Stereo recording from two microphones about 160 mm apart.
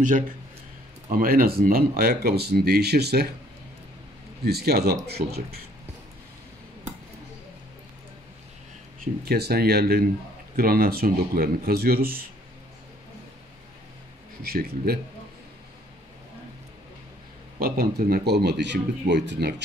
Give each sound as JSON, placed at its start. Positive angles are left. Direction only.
{"t": 1.0, "sound": "speech", "side_deg": -65}
{"t": 4.5, "sound": "speech", "side_deg": -80}
{"t": 9.0, "sound": "speech", "side_deg": -80}
{"t": 14.4, "sound": "speech", "side_deg": -70}
{"t": 17.6, "sound": "speech", "side_deg": -70}